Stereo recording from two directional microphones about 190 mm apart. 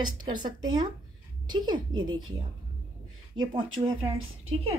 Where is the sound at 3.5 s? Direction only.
25° right (ahead or behind).